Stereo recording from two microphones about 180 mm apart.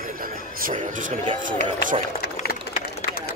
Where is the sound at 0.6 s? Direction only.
45° right (ahead or behind).